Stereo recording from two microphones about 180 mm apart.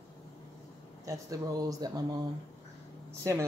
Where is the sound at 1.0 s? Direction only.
20° right (ahead or behind).